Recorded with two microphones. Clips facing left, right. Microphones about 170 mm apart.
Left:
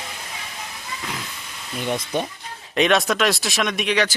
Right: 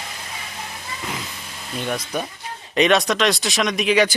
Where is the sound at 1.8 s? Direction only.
25° left (ahead or behind).